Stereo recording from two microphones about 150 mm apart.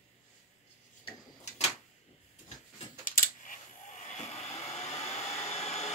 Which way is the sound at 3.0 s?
65° left (ahead or behind).